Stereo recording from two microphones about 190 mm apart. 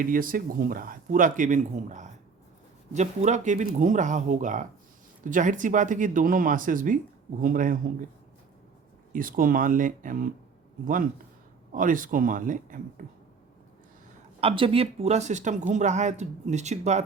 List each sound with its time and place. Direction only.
0.0 s speech: 45° right (ahead or behind)
9.1 s speech: 45° right (ahead or behind)
11.7 s speech: 45° right (ahead or behind)
14.4 s speech: 30° right (ahead or behind)